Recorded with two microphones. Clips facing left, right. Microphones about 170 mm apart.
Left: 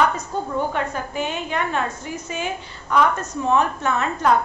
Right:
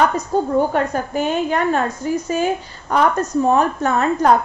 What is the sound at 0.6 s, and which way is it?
A woman's voice, 40° right (ahead or behind).